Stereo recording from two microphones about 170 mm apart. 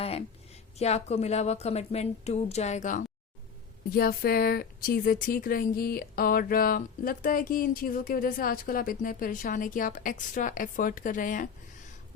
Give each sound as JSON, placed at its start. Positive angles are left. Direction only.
{"t": 0.0, "sound": "a sound", "side_deg": 35}
{"t": 0.8, "sound": "speech", "side_deg": 40}
{"t": 3.8, "sound": "speech", "side_deg": 60}